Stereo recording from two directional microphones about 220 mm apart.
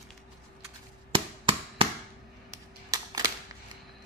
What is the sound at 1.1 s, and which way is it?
Chop, 20° right (ahead or behind).